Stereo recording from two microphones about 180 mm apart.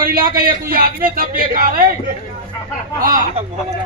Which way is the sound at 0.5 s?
55° right (ahead or behind).